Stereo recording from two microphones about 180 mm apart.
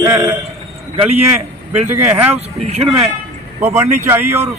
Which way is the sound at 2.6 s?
35° right (ahead or behind).